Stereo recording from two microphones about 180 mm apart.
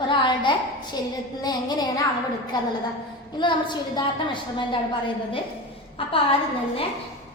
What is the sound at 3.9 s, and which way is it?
Speech, 25° left (ahead or behind).